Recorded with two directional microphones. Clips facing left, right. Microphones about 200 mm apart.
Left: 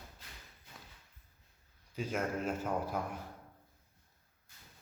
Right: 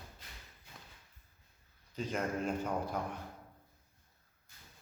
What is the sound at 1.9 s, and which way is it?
A man's voice, 5° left (ahead or behind).